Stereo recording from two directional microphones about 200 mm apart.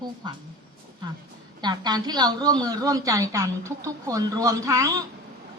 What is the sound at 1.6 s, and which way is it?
A woman's voice, 20° right (ahead or behind).